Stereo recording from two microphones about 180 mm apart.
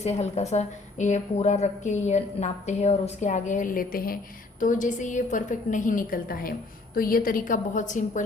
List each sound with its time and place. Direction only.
0.0 s a woman's voice: 35° left (ahead or behind)